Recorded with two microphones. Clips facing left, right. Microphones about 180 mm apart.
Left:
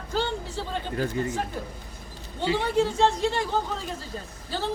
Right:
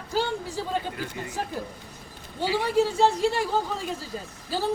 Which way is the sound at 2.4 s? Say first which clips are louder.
Even; 10° right (ahead or behind).